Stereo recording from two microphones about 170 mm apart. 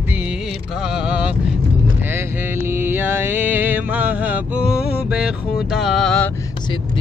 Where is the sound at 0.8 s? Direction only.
5° right (ahead or behind).